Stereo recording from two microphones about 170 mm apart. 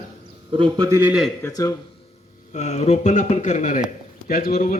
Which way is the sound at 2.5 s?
40° left (ahead or behind).